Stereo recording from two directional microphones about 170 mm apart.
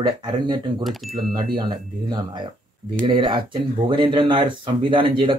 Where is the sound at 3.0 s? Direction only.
25° right (ahead or behind).